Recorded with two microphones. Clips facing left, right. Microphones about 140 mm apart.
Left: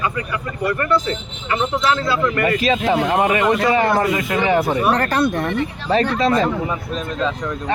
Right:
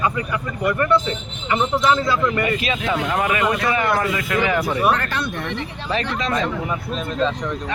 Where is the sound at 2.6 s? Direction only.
35° left (ahead or behind).